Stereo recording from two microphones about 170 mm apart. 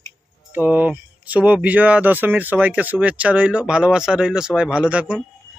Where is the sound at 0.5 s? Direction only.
10° right (ahead or behind).